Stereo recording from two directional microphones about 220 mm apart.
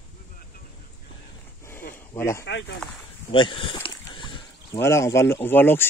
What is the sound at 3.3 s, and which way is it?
Speech, 25° left (ahead or behind).